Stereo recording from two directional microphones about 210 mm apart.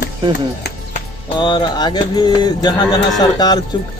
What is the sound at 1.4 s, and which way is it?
Speech, 20° left (ahead or behind).